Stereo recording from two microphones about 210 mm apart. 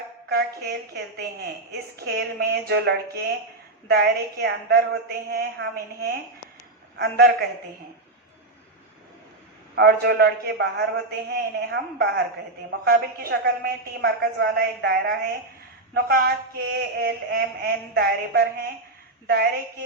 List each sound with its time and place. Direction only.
0.3 s a woman's voice: 50° right (ahead or behind)
9.7 s a woman's voice: 50° right (ahead or behind)